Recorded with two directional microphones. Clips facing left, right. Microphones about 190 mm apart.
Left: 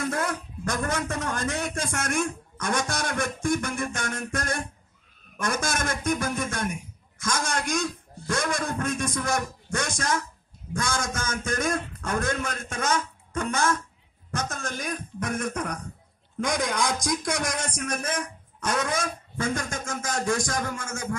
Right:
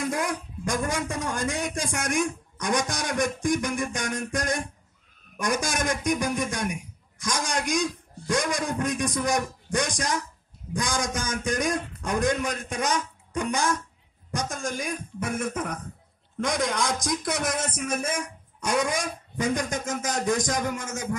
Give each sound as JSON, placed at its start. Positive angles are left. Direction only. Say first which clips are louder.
{"t": 0.0, "sound": "a man's voice", "louder": "even", "side_deg": -15}